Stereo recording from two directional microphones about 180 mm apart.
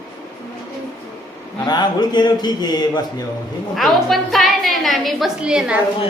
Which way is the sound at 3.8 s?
Centre (ahead or behind).